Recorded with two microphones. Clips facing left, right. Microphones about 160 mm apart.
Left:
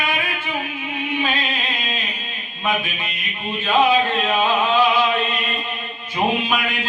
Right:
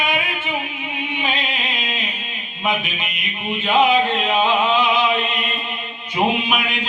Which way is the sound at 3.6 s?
20° right (ahead or behind).